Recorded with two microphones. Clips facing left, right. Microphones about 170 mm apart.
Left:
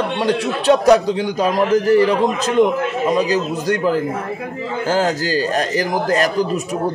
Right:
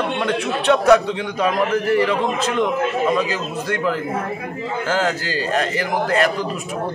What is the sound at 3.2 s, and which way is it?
A man's voice, 40° left (ahead or behind).